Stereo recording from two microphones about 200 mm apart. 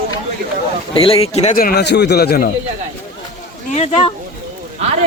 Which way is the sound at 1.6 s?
50° left (ahead or behind).